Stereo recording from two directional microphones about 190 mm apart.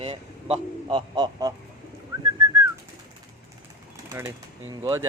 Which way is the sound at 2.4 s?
20° right (ahead or behind).